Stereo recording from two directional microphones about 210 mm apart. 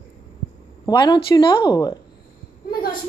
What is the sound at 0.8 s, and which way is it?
Speech, 20° left (ahead or behind).